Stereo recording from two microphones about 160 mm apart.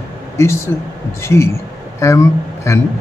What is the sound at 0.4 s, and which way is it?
A man's voice, 15° left (ahead or behind).